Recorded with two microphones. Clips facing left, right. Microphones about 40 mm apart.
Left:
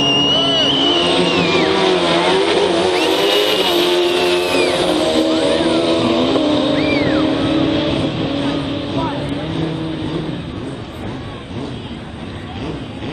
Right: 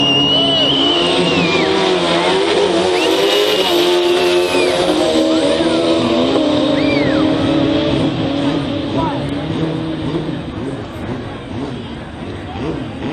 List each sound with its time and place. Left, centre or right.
0.0 s vehicle: right
0.7 s vehicle: centre